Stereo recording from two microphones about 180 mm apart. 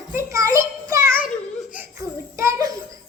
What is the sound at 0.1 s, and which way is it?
Child singing, 15° right (ahead or behind).